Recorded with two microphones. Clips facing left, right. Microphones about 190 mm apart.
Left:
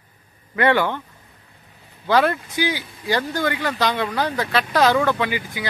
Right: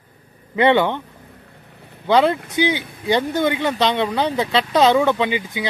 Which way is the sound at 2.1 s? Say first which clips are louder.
Right 3 dB; 20° right (ahead or behind).